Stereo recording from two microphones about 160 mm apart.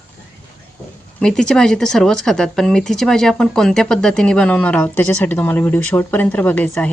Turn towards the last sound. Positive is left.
turn(degrees=10)  # may be behind; listen again after turning